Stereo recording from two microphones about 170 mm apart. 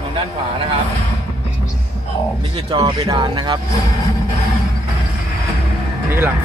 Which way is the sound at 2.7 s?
30° right (ahead or behind).